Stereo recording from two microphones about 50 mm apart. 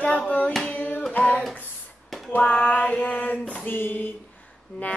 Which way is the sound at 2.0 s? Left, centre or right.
Centre.